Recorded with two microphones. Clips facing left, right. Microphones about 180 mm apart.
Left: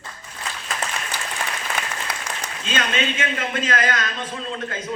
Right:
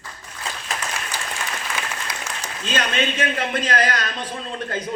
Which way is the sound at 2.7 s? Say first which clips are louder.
Right 1 dB; 35° right (ahead or behind).